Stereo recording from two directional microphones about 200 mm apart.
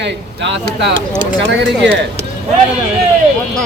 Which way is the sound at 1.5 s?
60° right (ahead or behind).